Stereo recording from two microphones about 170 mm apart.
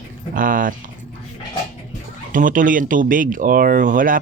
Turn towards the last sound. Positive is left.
turn(degrees=-50)  # may be behind; listen again after turning